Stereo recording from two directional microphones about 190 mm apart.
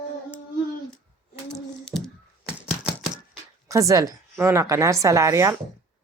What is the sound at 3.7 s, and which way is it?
Speech, 15° right (ahead or behind).